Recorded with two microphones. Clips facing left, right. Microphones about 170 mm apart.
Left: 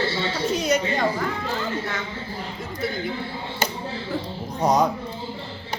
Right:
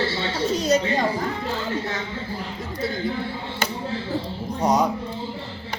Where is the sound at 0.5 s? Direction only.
35° right (ahead or behind).